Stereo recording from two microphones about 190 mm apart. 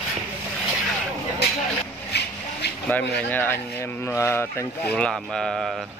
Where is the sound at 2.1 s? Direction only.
60° left (ahead or behind).